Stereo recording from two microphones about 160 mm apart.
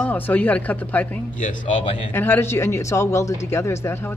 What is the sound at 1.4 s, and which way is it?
Speech, 50° left (ahead or behind).